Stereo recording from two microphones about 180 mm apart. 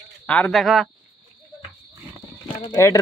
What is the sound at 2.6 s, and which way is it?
Speech, 20° left (ahead or behind).